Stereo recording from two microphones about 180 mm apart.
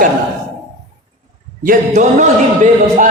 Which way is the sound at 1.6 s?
50° right (ahead or behind).